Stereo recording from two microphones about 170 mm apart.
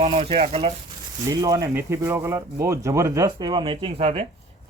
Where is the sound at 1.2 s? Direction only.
20° right (ahead or behind).